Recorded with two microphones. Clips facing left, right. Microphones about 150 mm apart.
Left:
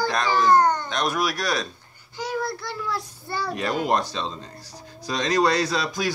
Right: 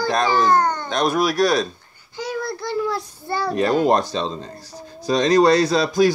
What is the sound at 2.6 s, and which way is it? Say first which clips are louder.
Child singing: right 7 dB; 20° right (ahead or behind).